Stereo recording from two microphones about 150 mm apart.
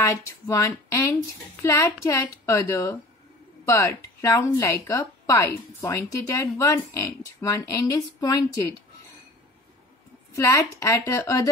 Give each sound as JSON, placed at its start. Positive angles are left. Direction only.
{"t": 0.0, "sound": "a woman's voice", "side_deg": 20}
{"t": 10.3, "sound": "speech", "side_deg": 20}